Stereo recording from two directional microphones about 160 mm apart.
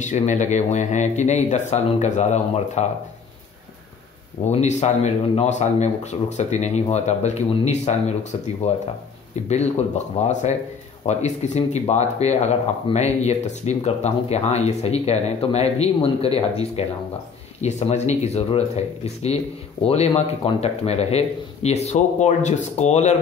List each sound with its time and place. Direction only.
0.0 s speech: 50° left (ahead or behind)
4.5 s speech: 45° left (ahead or behind)